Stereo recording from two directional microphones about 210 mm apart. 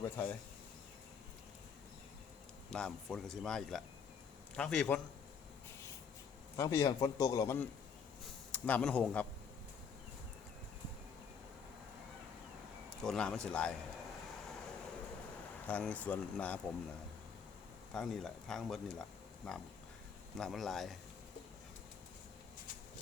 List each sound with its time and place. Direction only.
0.0 s a man's voice: 10° left (ahead or behind)
2.6 s speech: 5° left (ahead or behind)
6.6 s a man's voice: 15° left (ahead or behind)
13.0 s speech: 5° left (ahead or behind)
15.6 s a man's voice: 5° left (ahead or behind)
17.9 s speech: centre (ahead or behind)